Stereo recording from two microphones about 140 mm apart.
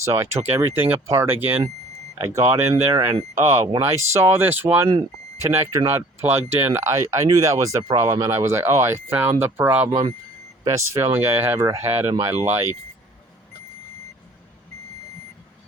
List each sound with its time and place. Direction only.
0.0 s speech: 20° right (ahead or behind)
9.9 s speech: 25° right (ahead or behind)